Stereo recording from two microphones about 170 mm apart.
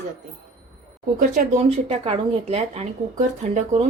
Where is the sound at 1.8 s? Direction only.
35° right (ahead or behind).